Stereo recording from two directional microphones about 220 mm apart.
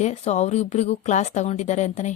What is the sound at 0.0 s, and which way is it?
A woman's voice, 30° left (ahead or behind).